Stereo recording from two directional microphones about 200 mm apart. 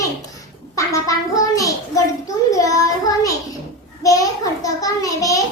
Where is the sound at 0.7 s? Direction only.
15° left (ahead or behind).